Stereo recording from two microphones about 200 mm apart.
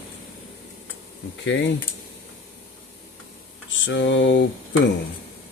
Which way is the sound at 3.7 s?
65° left (ahead or behind).